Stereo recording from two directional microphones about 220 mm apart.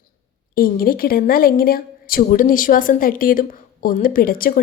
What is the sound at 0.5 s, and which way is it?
A woman's voice, 40° left (ahead or behind).